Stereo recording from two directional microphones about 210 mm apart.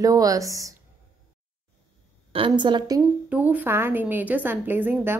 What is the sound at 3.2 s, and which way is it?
A woman's voice, 10° right (ahead or behind).